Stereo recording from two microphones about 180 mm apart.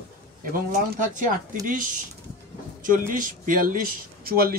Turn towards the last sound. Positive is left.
turn(degrees=-55)  # may be behind; listen again after turning